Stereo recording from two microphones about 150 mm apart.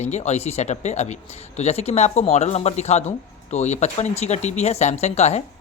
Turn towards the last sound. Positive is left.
turn(degrees=50)  # may be behind; listen again after turning